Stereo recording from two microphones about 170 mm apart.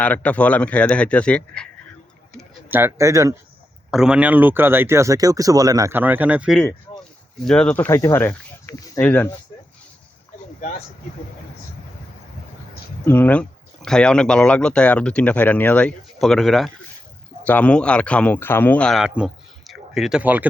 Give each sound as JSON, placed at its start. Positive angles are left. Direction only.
{"t": 0.0, "sound": "speech", "side_deg": 10}
{"t": 2.4, "sound": "speech", "side_deg": -10}
{"t": 3.9, "sound": "speech", "side_deg": -5}
{"t": 7.4, "sound": "speech", "side_deg": 5}
{"t": 13.1, "sound": "speech", "side_deg": 10}